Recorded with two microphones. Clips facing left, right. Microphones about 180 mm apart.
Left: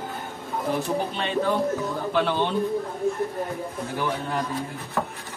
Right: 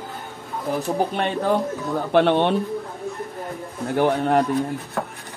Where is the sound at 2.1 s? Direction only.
65° right (ahead or behind).